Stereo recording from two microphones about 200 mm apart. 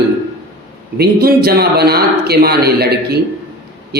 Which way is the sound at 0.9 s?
50° right (ahead or behind).